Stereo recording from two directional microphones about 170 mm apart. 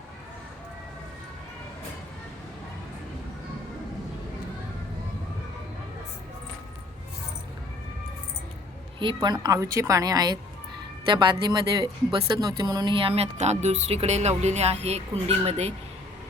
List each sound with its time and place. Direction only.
9.0 s speech: 25° right (ahead or behind)